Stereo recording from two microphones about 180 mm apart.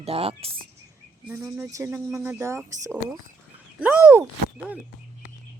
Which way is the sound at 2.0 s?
5° right (ahead or behind).